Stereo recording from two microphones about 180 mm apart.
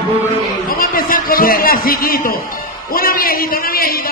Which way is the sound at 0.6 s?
55° left (ahead or behind).